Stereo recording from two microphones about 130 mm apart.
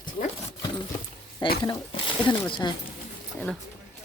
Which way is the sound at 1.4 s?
35° left (ahead or behind).